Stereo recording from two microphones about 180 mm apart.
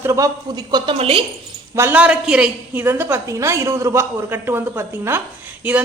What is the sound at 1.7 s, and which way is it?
A woman's voice, 10° right (ahead or behind).